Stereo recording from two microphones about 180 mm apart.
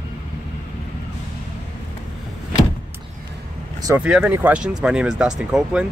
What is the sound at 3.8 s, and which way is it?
Speech, 10° right (ahead or behind).